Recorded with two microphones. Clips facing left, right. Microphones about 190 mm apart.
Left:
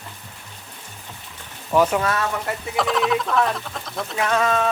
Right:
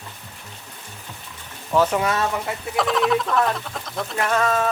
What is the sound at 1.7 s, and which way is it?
Speech, 10° left (ahead or behind).